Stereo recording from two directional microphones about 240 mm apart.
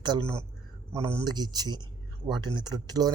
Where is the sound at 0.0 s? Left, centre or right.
Centre.